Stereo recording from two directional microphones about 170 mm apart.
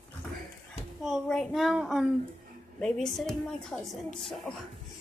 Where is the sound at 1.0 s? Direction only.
Centre (ahead or behind).